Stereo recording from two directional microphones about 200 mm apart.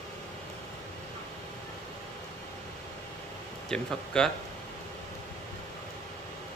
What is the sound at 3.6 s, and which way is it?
Speech, 5° left (ahead or behind).